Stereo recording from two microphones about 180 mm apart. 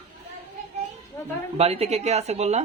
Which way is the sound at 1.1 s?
15° left (ahead or behind).